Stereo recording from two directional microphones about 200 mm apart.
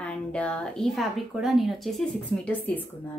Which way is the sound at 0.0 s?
5° left (ahead or behind).